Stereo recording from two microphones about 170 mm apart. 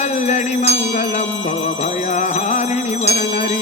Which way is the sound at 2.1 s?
45° left (ahead or behind).